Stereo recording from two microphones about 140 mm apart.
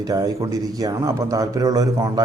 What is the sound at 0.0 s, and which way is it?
A man's voice, 25° right (ahead or behind).